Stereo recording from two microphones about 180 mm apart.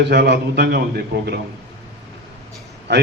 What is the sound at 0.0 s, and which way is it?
A man's voice, 70° right (ahead or behind).